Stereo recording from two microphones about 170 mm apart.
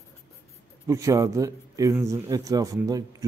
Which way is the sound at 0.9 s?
20° right (ahead or behind).